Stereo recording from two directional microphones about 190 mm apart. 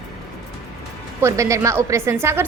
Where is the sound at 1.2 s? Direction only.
15° right (ahead or behind).